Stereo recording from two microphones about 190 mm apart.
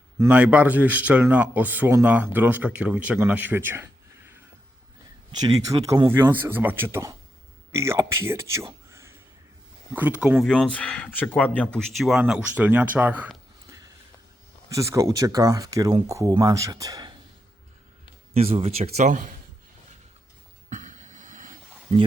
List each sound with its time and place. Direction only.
0.2 s speech: 10° right (ahead or behind)
5.6 s a man's voice: 20° right (ahead or behind)
10.4 s speech: 5° left (ahead or behind); by 17.2 s 20° right (ahead or behind)
18.5 s speech: 30° right (ahead or behind)
20.7 s a sound: 40° right (ahead or behind)